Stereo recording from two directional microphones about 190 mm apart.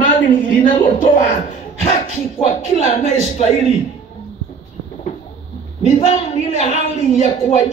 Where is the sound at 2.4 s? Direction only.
35° left (ahead or behind).